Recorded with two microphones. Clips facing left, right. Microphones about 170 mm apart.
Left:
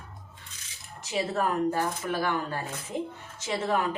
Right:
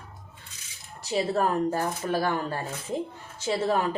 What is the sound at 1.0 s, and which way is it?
Speech, 35° right (ahead or behind).